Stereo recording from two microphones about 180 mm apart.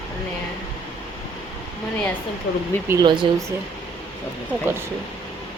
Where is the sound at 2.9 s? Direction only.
25° right (ahead or behind).